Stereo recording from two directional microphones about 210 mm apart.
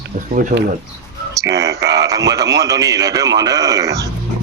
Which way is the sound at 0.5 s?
30° right (ahead or behind).